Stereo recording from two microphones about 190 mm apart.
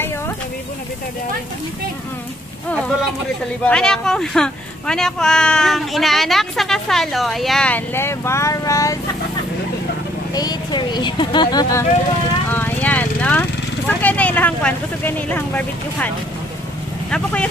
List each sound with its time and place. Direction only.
3.6 s speech: 5° left (ahead or behind)
10.3 s speech: 20° left (ahead or behind)
12.4 s speech: 10° left (ahead or behind)
17.1 s speech: 5° left (ahead or behind)